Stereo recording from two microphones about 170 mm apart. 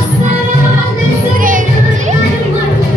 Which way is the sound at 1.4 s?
50° right (ahead or behind).